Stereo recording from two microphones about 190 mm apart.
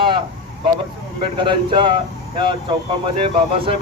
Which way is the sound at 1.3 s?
25° right (ahead or behind).